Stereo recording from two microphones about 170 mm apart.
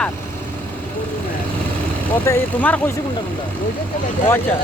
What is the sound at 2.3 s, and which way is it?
Speech, 10° left (ahead or behind).